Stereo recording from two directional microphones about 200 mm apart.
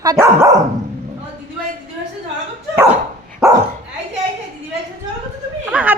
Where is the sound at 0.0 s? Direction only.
15° right (ahead or behind).